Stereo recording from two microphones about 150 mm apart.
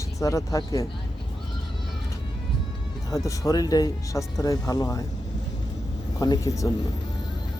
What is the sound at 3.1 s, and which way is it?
Speech, 25° left (ahead or behind).